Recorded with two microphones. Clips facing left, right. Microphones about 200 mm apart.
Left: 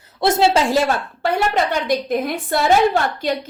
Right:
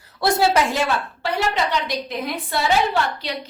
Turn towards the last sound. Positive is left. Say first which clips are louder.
# left 4 dB
turn(degrees=50)  # may be behind; listen again after turning